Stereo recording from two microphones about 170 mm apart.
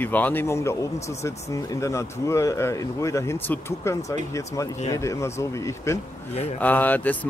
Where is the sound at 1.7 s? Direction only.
15° left (ahead or behind).